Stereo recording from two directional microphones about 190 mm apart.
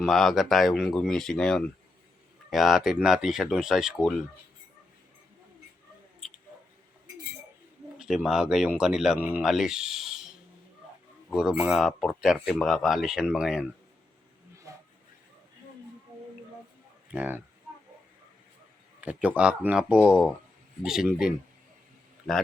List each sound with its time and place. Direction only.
0.0 s speech: centre (ahead or behind)
6.2 s a sound: centre (ahead or behind)
7.9 s speech: 5° right (ahead or behind)
14.5 s vehicle: 15° right (ahead or behind)
17.1 s speech: 10° right (ahead or behind)
18.9 s speech: 5° right (ahead or behind)